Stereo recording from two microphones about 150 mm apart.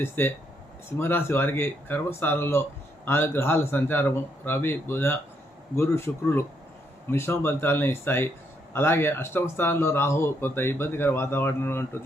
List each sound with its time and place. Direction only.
0.0 s a man's voice: 15° left (ahead or behind)